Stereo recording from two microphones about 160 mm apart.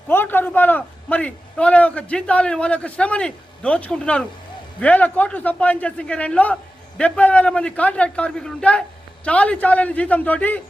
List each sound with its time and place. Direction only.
0.1 s a man's voice: 15° left (ahead or behind)